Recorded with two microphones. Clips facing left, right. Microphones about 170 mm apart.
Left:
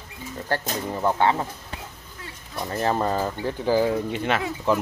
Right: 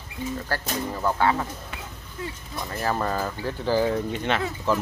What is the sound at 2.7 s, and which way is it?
Speech, 25° left (ahead or behind).